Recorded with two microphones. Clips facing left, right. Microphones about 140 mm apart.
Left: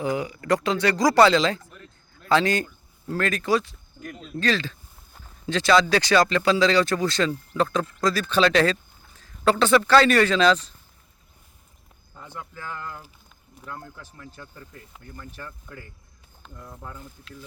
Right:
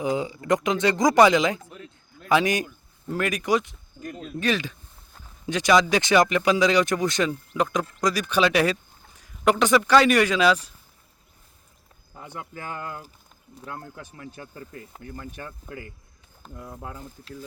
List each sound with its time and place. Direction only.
0.0 s speech: 20° right (ahead or behind)
4.0 s speech: 5° right (ahead or behind)
4.4 s speech: 15° right (ahead or behind)
12.1 s cricket: 15° right (ahead or behind)
14.3 s speech: 10° right (ahead or behind)
16.6 s speech: 15° right (ahead or behind)
17.0 s speech: 35° right (ahead or behind)